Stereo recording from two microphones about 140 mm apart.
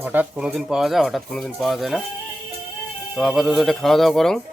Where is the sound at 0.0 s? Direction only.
10° right (ahead or behind).